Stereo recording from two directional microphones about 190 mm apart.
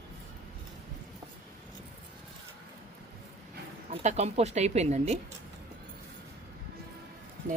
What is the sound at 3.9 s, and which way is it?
Speech, 35° right (ahead or behind).